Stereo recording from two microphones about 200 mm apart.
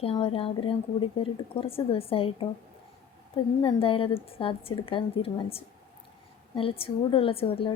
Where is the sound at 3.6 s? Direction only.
25° left (ahead or behind).